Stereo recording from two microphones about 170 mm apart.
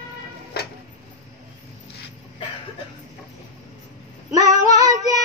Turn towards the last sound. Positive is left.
turn(degrees=-20)  # may be behind; listen again after turning